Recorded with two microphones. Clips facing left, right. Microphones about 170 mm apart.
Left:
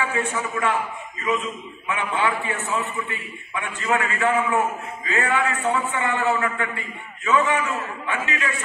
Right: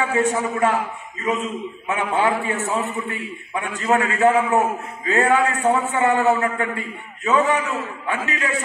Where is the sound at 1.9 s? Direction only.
40° right (ahead or behind).